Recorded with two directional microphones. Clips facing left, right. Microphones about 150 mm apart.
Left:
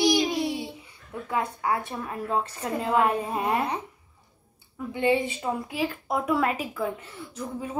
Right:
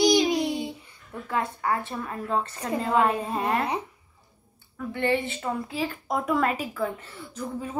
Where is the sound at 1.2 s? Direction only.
10° left (ahead or behind).